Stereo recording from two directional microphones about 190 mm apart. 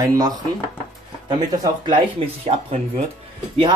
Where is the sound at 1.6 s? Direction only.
25° right (ahead or behind).